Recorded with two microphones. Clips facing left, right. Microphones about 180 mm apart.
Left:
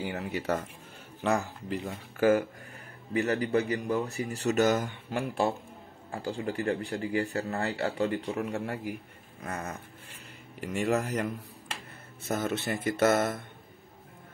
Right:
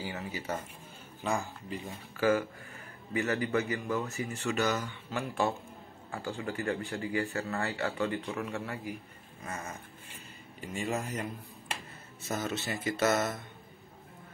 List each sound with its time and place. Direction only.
0.0 s speech: 65° left (ahead or behind)
2.1 s speech: 45° left (ahead or behind)
9.4 s a sound: 60° left (ahead or behind)
10.6 s speech: 70° left (ahead or behind)
12.2 s speech: 55° left (ahead or behind)